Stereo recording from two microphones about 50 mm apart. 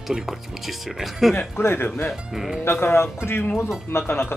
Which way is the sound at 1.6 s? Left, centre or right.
Left.